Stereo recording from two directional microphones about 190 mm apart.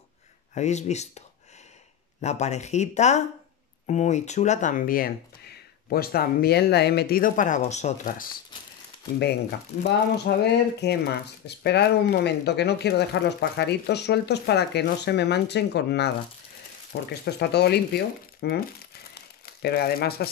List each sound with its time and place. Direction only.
0.6 s speech: 35° left (ahead or behind)
2.2 s speech: 35° left (ahead or behind)
9.8 s speech: 60° left (ahead or behind)